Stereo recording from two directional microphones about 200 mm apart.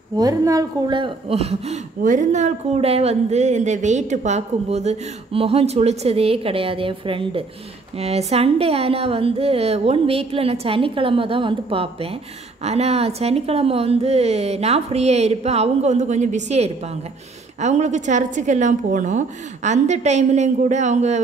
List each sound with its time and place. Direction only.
0.2 s speech: 15° right (ahead or behind); by 21.2 s 35° right (ahead or behind)